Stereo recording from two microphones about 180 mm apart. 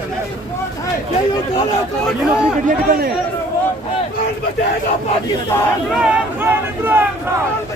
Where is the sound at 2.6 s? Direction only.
50° right (ahead or behind).